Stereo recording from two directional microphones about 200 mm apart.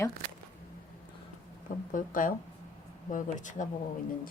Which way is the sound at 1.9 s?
40° left (ahead or behind).